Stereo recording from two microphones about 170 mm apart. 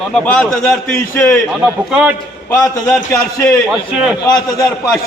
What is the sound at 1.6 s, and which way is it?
Speech, 10° right (ahead or behind).